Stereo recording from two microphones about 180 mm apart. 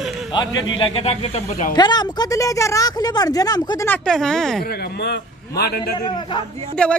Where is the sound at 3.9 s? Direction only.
5° left (ahead or behind).